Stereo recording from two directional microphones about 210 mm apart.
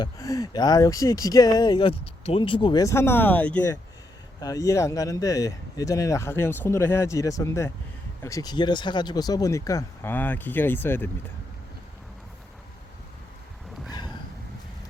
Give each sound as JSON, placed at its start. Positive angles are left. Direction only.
{"t": 0.0, "sound": "speech", "side_deg": 15}